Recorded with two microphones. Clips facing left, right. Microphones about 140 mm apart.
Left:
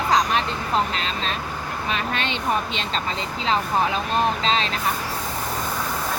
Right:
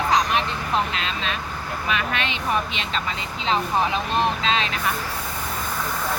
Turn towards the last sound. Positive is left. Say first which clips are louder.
# left 1 dB
turn(degrees=35)  # may be behind; listen again after turning